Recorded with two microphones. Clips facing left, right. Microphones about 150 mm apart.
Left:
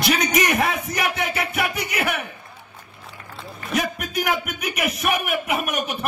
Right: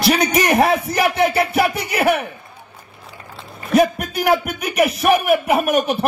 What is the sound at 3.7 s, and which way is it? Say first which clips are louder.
A man's voice: right 9 dB; 35° right (ahead or behind).